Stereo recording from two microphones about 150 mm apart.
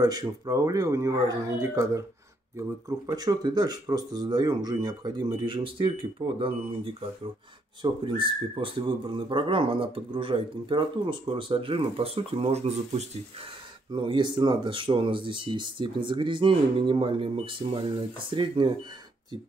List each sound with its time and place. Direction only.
0.0 s speech: 25° right (ahead or behind); by 13.0 s 45° right (ahead or behind)
13.9 s speech: 35° right (ahead or behind)